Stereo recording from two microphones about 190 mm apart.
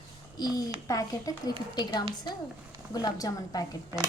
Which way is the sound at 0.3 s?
20° left (ahead or behind).